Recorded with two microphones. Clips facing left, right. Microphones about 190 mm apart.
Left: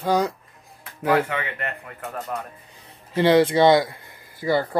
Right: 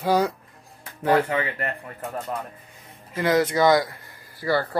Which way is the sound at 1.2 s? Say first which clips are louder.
Right 3 dB; 35° right (ahead or behind).